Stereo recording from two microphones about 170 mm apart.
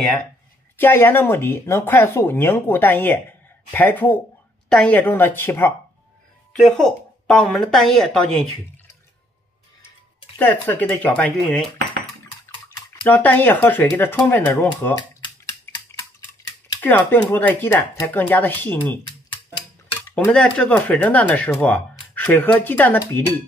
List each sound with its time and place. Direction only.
0.7 s speech: 10° left (ahead or behind)
10.3 s speech: 15° left (ahead or behind)
13.0 s speech: 10° left (ahead or behind)
16.8 s speech: 10° left (ahead or behind)
19.3 s music: 30° left (ahead or behind)
20.2 s speech: 5° left (ahead or behind)